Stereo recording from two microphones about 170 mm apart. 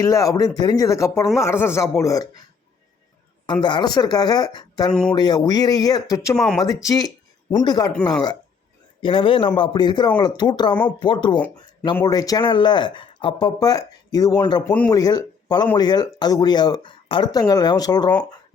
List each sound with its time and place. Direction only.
0.0 s speech: 20° left (ahead or behind)
3.4 s speech: 25° left (ahead or behind)
4.9 s speech: 5° left (ahead or behind)
5.1 s speech: 25° left (ahead or behind)
6.3 s speech: 5° left (ahead or behind)
6.8 s speech: 20° left (ahead or behind)
9.0 s a man's voice: 30° left (ahead or behind)
11.5 s a sound: 25° left (ahead or behind)
12.0 s speech: 20° left (ahead or behind)
14.6 s speech: 10° left (ahead or behind)
14.8 s speech: 20° left (ahead or behind)